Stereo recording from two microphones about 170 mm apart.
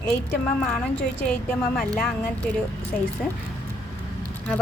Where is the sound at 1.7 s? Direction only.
5° left (ahead or behind).